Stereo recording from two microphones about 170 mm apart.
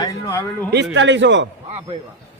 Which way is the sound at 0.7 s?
90° right.